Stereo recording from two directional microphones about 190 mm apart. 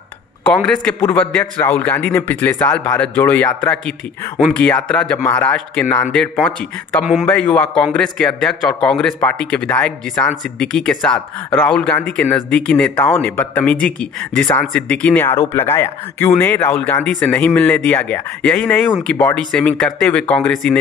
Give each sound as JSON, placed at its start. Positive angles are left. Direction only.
{"t": 0.6, "sound": "speech", "side_deg": 10}